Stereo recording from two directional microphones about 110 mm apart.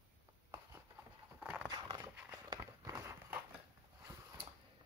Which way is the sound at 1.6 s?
40° right (ahead or behind).